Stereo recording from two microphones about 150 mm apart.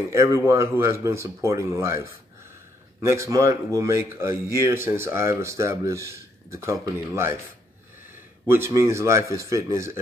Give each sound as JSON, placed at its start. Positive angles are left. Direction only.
{"t": 0.1, "sound": "speech", "side_deg": -20}
{"t": 8.5, "sound": "speech", "side_deg": -15}